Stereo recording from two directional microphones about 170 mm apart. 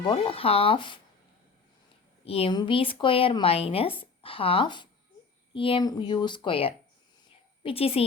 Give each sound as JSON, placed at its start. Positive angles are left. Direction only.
{"t": 0.0, "sound": "speech", "side_deg": 35}
{"t": 2.2, "sound": "speech", "side_deg": 35}